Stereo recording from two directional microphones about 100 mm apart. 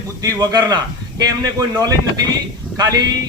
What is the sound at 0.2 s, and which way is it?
Speech, 40° right (ahead or behind).